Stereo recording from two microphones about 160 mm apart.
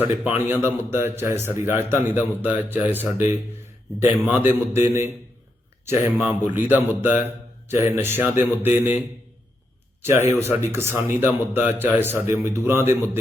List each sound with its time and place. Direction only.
0.3 s a man's voice: 10° right (ahead or behind)
10.0 s a man's voice: 15° right (ahead or behind)